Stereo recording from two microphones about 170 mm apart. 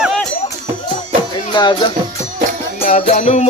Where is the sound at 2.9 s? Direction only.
45° left (ahead or behind).